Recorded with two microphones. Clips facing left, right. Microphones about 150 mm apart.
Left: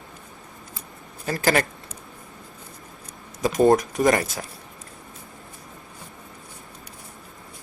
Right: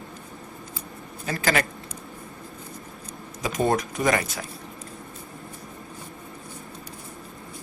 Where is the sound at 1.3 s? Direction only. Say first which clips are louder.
Left 3 dB; 40° left (ahead or behind).